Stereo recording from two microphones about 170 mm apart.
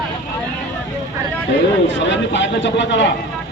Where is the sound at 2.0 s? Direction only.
90° left.